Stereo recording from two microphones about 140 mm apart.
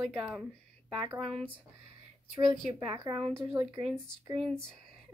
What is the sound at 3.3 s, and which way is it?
Speech, 20° right (ahead or behind).